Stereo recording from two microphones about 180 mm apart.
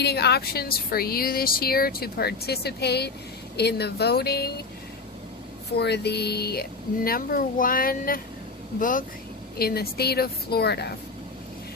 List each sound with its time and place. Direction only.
0.0 s speech: 65° left (ahead or behind)
5.7 s speech: 65° left (ahead or behind); by 9.0 s 50° left (ahead or behind)
9.6 s speech: 60° left (ahead or behind)